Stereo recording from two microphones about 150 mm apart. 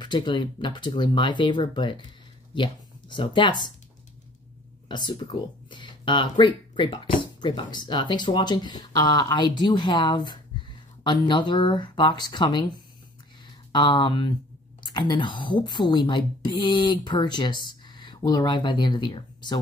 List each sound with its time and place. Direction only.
0.0 s speech: 30° left (ahead or behind)
4.8 s speech: 30° left (ahead or behind)
13.7 s speech: 30° left (ahead or behind)